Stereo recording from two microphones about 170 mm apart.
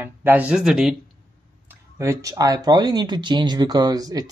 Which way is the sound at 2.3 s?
20° right (ahead or behind).